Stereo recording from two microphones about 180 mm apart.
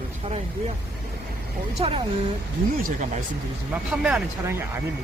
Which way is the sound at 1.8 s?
35° right (ahead or behind).